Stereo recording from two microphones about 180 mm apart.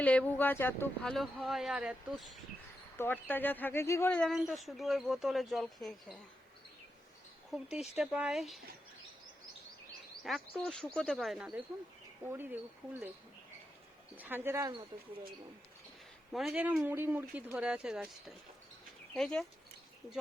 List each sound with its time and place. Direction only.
0.0 s speech: 10° left (ahead or behind)
1.1 s speech: centre (ahead or behind)
3.0 s speech: 10° left (ahead or behind)
7.5 s speech: 5° right (ahead or behind)
10.2 s speech: centre (ahead or behind)
14.2 s speech: 10° right (ahead or behind)
16.3 s speech: centre (ahead or behind)